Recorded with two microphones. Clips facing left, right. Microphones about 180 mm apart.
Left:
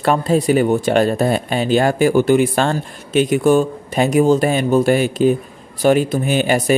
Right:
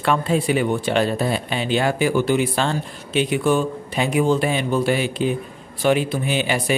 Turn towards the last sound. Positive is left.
turn(degrees=45)  # may be behind; listen again after turning